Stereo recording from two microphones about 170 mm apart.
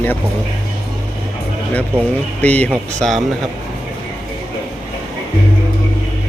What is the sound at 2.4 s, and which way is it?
Speech, 10° left (ahead or behind).